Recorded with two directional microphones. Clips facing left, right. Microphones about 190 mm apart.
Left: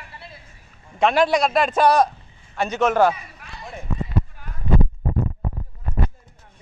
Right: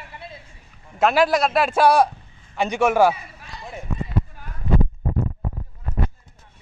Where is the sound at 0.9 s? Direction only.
5° right (ahead or behind).